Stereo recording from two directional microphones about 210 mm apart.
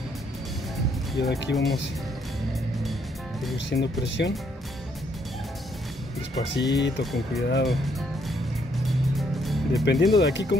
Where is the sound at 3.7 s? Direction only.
55° left (ahead or behind).